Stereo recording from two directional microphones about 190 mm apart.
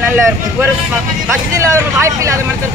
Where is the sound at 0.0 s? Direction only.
10° right (ahead or behind).